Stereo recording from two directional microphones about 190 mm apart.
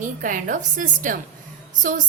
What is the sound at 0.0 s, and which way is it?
A woman's voice, 45° right (ahead or behind).